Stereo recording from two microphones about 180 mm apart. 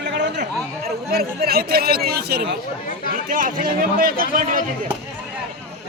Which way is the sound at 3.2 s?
50° right (ahead or behind).